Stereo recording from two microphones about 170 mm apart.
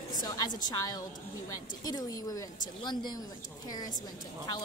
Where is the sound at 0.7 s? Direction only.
20° left (ahead or behind).